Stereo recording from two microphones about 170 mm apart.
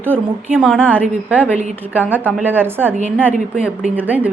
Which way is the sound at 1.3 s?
10° right (ahead or behind).